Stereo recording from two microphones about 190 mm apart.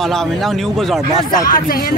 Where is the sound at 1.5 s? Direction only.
50° left (ahead or behind).